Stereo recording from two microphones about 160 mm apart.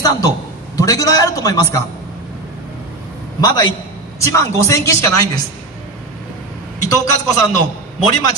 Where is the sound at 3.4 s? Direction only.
25° left (ahead or behind).